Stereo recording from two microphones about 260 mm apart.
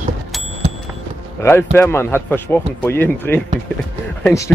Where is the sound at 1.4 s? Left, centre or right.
Centre.